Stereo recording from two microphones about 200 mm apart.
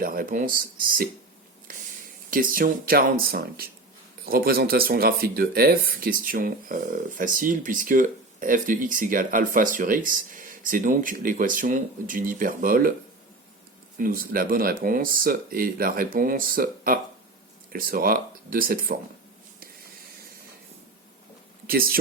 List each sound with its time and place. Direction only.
0.0 s speech: 45° right (ahead or behind)
2.3 s speech: 45° right (ahead or behind)
14.0 s speech: 45° right (ahead or behind)
21.7 s speech: 45° right (ahead or behind)